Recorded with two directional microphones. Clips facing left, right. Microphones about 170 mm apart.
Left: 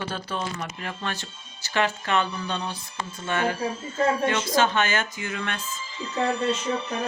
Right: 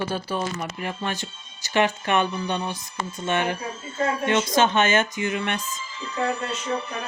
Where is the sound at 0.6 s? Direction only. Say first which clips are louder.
Right 3 dB; 10° right (ahead or behind).